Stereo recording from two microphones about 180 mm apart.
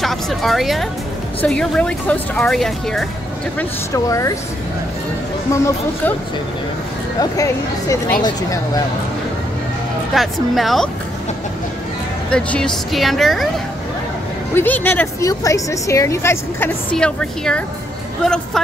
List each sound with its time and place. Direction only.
0.0 s speech: centre (ahead or behind)
3.5 s a woman's voice: 15° left (ahead or behind)
5.5 s a woman's voice: 15° left (ahead or behind)
7.2 s speech: 20° left (ahead or behind)
10.1 s speech: centre (ahead or behind)
12.3 s speech: 5° left (ahead or behind)
14.5 s a woman's voice: 10° left (ahead or behind)